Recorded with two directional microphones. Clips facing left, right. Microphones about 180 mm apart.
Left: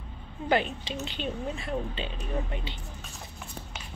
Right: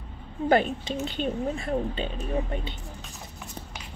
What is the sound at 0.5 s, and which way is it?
Speech, 45° right (ahead or behind).